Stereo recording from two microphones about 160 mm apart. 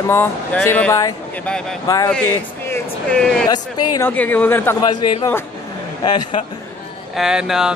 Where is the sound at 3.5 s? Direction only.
15° left (ahead or behind).